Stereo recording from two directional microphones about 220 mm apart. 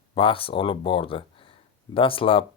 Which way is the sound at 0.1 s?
25° left (ahead or behind).